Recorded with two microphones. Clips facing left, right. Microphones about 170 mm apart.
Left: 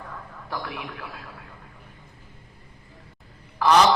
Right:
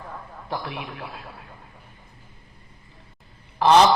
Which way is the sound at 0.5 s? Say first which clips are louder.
Right 2 dB; 25° right (ahead or behind).